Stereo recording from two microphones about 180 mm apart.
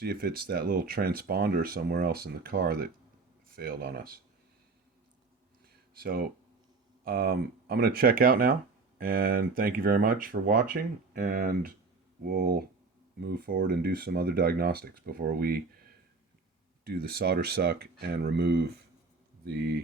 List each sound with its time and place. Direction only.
0.0 s speech: 60° right (ahead or behind)
6.0 s speech: 55° right (ahead or behind)
16.8 s speech: 60° right (ahead or behind)